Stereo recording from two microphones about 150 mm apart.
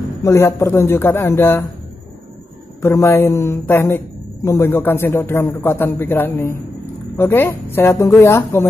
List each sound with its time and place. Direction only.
0.2 s a woman's voice: 20° left (ahead or behind)
2.8 s a woman's voice: 20° left (ahead or behind)